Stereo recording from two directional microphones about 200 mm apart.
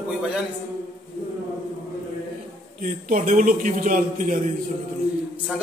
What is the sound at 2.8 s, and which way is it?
A man's voice, 40° right (ahead or behind).